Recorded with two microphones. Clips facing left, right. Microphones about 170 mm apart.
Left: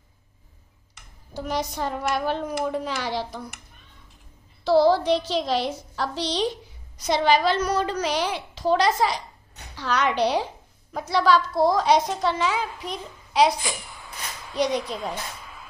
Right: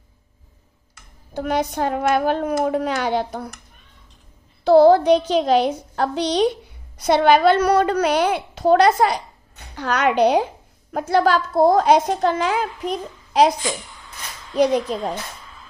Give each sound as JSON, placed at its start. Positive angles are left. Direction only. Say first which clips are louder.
{"t": 1.3, "sound": "a woman's voice", "louder": "right 6 dB", "side_deg": -60}
{"t": 4.6, "sound": "a woman's voice", "louder": "right 6 dB", "side_deg": -55}
{"t": 13.8, "sound": "a sound", "louder": "left 1 dB", "side_deg": 20}
{"t": 14.9, "sound": "a woman's voice", "louder": "right 6 dB", "side_deg": -40}